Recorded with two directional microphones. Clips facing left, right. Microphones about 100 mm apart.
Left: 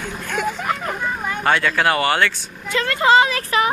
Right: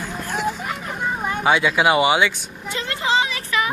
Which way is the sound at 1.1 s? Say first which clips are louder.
Right 1 dB; 20° right (ahead or behind).